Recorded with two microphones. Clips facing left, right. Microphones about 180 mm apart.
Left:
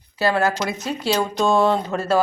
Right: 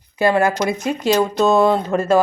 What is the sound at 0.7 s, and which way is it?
Speech, 50° right (ahead or behind).